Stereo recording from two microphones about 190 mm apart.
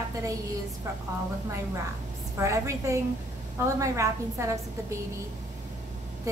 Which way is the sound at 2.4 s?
15° right (ahead or behind).